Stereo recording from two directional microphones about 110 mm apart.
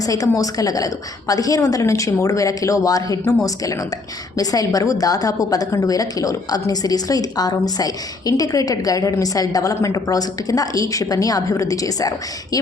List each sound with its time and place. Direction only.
0.0 s a woman's voice: 35° left (ahead or behind)